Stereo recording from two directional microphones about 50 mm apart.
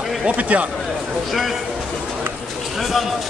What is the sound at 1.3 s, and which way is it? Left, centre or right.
Speech, centre.